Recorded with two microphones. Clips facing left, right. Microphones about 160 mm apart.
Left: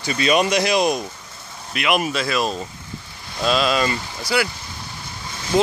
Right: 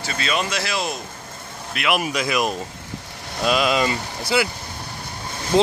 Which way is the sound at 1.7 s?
Centre (ahead or behind).